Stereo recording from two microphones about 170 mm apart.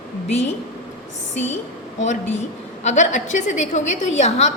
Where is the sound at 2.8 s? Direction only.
45° left (ahead or behind).